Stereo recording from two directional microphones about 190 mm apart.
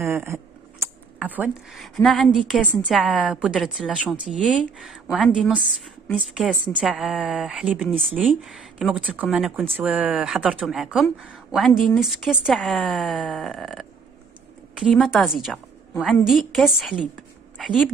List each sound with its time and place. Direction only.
0.0 s speech: 15° right (ahead or behind); by 2.9 s 10° left (ahead or behind)
2.9 s speech: centre (ahead or behind)
6.0 s a woman's voice: 5° left (ahead or behind)